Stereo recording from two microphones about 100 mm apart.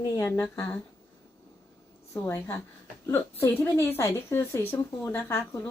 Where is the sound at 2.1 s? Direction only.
25° left (ahead or behind).